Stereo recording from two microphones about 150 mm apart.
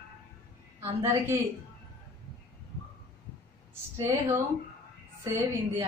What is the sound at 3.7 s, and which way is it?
Speech, 20° right (ahead or behind).